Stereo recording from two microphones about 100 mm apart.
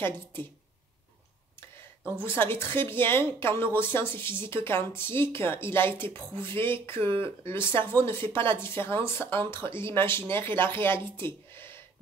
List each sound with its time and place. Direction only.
0.0 s speech: 20° left (ahead or behind)
2.2 s speech: 20° left (ahead or behind)